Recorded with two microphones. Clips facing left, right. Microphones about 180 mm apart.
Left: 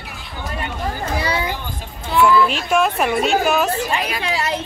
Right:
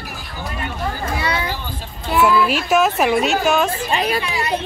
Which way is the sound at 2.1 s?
5° right (ahead or behind).